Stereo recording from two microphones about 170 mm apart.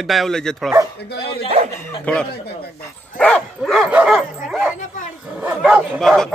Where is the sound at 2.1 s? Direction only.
10° left (ahead or behind).